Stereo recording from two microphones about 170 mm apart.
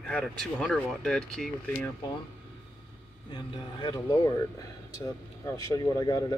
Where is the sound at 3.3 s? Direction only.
25° left (ahead or behind).